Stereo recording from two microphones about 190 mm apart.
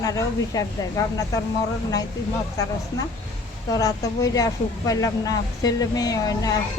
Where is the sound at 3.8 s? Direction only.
20° left (ahead or behind).